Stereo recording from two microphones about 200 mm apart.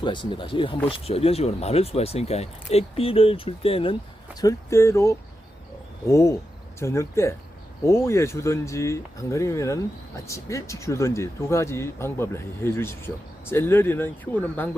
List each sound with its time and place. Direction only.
0.0 s speech: 25° left (ahead or behind)
4.4 s speech: 15° left (ahead or behind)